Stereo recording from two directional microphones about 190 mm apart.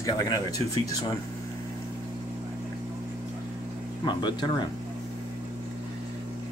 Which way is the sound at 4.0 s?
25° left (ahead or behind).